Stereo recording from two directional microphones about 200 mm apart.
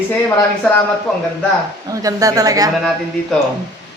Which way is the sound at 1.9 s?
15° right (ahead or behind).